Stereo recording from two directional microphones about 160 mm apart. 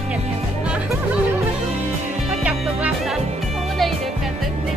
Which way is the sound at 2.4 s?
10° right (ahead or behind).